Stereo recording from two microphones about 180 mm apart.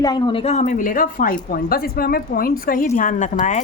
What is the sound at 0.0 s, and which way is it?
A woman's voice, 25° left (ahead or behind).